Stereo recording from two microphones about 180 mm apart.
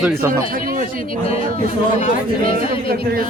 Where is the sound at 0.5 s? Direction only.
50° right (ahead or behind).